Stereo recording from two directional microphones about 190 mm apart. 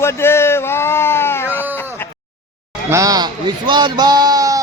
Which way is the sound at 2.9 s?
20° right (ahead or behind).